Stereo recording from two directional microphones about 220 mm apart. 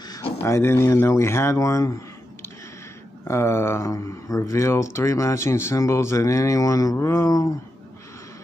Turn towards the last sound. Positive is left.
turn(degrees=15)  # may be behind; listen again after turning